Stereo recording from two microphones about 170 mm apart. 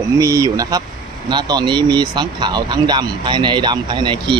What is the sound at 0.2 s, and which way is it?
Speech, 20° right (ahead or behind).